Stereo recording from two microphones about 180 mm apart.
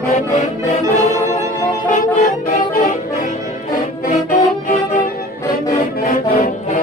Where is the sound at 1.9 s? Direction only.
45° left (ahead or behind).